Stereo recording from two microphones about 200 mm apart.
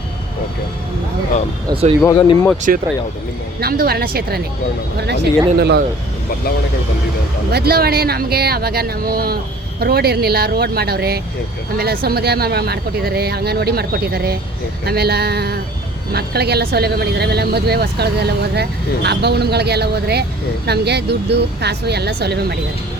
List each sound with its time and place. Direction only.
2.0 s speech: 20° left (ahead or behind)
3.6 s speech: 50° right (ahead or behind)
7.5 s speech: 50° right (ahead or behind)